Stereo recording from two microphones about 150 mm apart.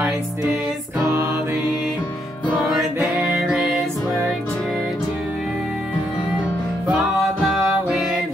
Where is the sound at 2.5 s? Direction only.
Centre (ahead or behind).